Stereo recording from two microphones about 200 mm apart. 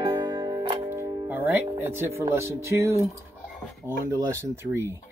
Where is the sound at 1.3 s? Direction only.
10° right (ahead or behind).